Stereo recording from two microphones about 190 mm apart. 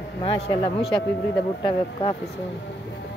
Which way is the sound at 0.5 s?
30° left (ahead or behind).